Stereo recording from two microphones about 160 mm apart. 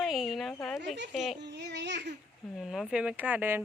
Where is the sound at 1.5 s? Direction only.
90° right.